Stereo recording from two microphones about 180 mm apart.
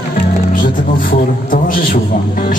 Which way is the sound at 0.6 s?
50° left (ahead or behind).